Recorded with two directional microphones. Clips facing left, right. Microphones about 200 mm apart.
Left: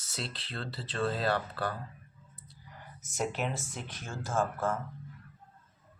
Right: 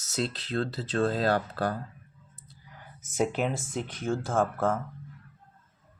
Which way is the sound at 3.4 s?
55° right (ahead or behind).